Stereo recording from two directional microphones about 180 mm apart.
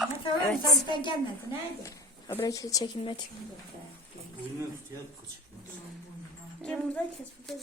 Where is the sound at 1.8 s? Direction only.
15° left (ahead or behind).